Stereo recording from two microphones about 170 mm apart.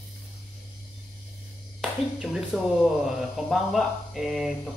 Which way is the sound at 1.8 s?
Centre (ahead or behind).